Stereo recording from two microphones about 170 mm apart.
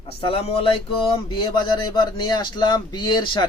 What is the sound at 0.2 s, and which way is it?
A man's voice, 35° left (ahead or behind).